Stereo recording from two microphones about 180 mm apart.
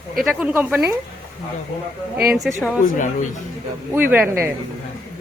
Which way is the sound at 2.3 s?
Centre (ahead or behind).